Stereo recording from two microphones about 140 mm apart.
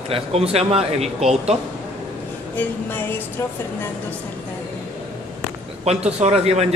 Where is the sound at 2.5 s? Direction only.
15° left (ahead or behind).